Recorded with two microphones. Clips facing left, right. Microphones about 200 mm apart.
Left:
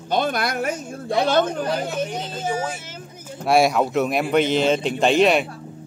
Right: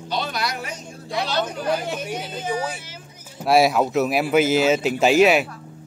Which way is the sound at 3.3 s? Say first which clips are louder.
Even; centre (ahead or behind).